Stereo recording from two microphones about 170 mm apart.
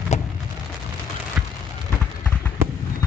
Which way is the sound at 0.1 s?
45° left (ahead or behind).